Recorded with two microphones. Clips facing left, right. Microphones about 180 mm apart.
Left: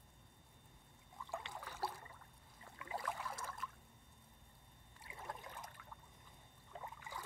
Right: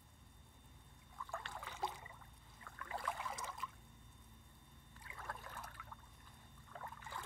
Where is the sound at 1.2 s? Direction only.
15° left (ahead or behind).